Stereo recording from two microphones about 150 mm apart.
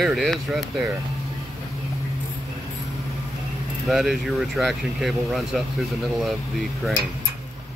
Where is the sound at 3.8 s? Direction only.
Centre (ahead or behind).